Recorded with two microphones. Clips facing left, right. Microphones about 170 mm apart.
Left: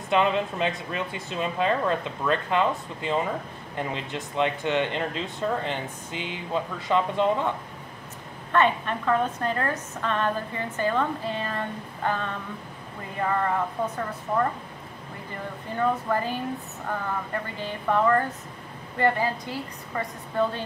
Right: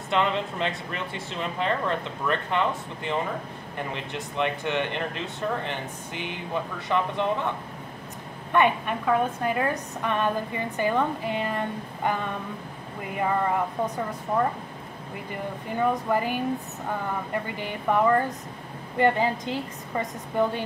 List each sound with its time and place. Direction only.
0.1 s speech: 15° left (ahead or behind)
4.4 s speech: 15° left (ahead or behind)
8.5 s a woman's voice: 15° right (ahead or behind)
15.8 s a woman's voice: 15° right (ahead or behind)